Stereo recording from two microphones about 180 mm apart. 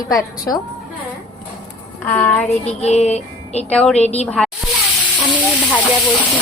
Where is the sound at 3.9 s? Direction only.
35° left (ahead or behind).